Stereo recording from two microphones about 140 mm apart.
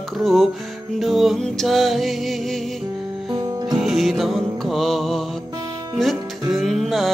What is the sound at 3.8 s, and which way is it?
Music, centre (ahead or behind).